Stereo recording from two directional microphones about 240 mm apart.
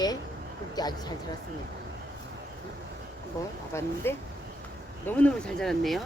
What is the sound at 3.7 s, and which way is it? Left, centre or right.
Speech, centre.